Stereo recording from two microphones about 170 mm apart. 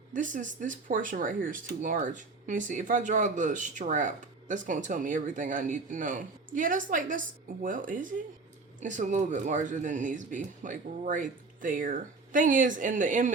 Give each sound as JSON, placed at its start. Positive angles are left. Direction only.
{"t": 0.1, "sound": "speech", "side_deg": -50}